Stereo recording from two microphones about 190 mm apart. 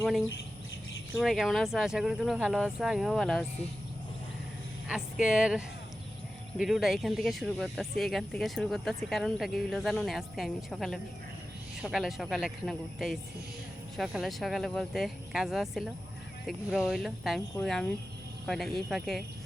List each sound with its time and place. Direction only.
0.0 s speech: centre (ahead or behind)
4.9 s speech: 5° right (ahead or behind)